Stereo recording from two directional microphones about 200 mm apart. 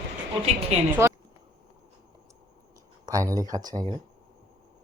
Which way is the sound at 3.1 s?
15° right (ahead or behind).